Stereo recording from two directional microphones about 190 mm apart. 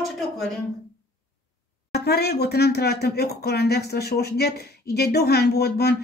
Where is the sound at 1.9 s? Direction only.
60° left (ahead or behind).